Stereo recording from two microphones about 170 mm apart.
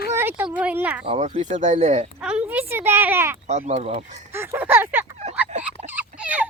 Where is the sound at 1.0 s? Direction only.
40° right (ahead or behind).